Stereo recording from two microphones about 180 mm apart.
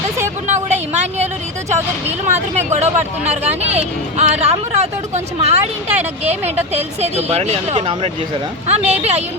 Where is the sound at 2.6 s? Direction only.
40° right (ahead or behind).